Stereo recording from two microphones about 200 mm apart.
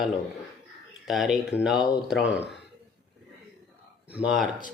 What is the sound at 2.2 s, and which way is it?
Speech, 65° left (ahead or behind).